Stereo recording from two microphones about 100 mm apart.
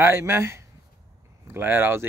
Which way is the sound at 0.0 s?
25° right (ahead or behind).